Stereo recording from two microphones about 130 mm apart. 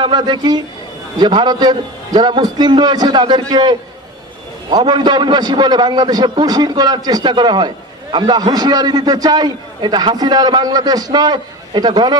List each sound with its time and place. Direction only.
0.0 s a man's voice: 35° right (ahead or behind)